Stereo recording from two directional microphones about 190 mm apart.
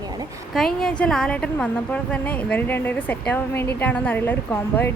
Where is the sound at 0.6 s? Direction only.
Centre (ahead or behind).